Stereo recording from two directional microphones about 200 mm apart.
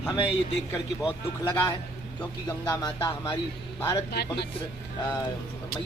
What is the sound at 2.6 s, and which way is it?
A man's voice, 20° left (ahead or behind).